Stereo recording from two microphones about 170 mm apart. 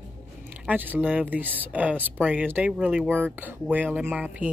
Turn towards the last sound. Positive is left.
turn(degrees=-5)  # may be behind; listen again after turning